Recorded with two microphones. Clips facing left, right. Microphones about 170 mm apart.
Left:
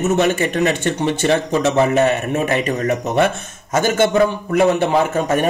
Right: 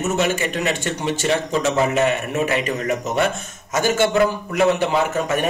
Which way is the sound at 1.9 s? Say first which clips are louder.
Left 3 dB; 35° left (ahead or behind).